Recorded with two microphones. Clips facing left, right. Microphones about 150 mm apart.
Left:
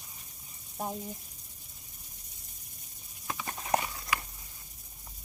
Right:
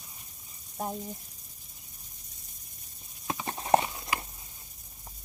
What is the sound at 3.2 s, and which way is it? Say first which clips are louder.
Clip-clop: right 6 dB; 30° right (ahead or behind).